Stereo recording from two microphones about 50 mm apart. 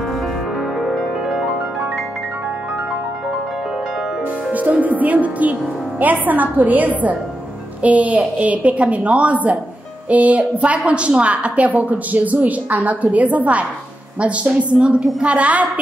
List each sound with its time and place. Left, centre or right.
0.7 s music: centre
4.5 s a woman's voice: right